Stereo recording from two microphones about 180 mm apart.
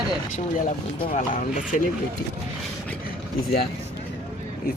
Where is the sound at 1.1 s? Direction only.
45° left (ahead or behind).